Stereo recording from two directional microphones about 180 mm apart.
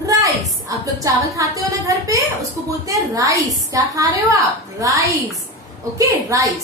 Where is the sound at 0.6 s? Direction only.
20° right (ahead or behind).